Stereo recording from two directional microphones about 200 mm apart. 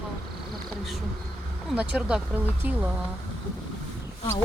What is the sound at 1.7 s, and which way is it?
Speech, 5° right (ahead or behind).